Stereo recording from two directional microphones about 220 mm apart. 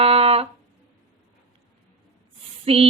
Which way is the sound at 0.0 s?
25° right (ahead or behind).